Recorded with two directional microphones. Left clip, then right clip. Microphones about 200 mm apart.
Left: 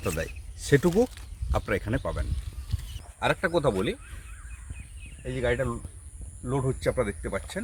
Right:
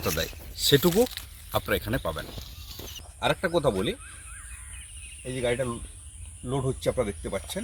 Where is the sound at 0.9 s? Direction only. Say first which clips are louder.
Right 1 dB; centre (ahead or behind).